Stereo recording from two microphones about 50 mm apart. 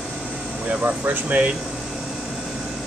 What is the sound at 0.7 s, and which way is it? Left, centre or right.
Speech, right.